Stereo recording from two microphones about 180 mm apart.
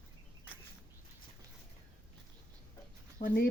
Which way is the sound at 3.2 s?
50° left (ahead or behind).